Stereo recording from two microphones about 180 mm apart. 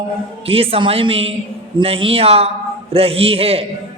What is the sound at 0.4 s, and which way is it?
A man's voice, 30° right (ahead or behind).